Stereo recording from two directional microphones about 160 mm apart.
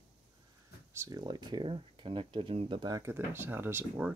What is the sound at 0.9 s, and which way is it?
Speech, 15° right (ahead or behind).